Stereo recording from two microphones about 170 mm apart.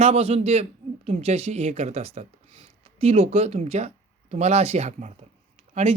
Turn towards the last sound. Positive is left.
turn(degrees=-45)  # may be behind; listen again after turning